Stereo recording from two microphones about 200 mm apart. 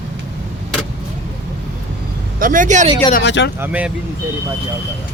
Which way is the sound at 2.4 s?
40° right (ahead or behind).